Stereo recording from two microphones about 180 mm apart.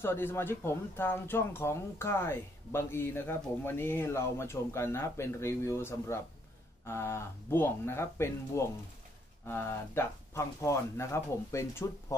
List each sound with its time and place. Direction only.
0.0 s speech: 15° left (ahead or behind)